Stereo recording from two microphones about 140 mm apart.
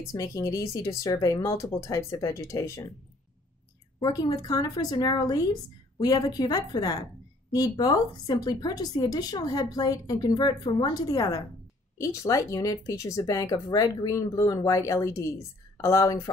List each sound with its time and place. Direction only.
0.1 s speech: 25° left (ahead or behind)
4.0 s speech: 25° left (ahead or behind)